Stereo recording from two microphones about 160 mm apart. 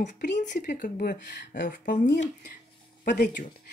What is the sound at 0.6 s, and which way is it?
Speech, 65° left (ahead or behind).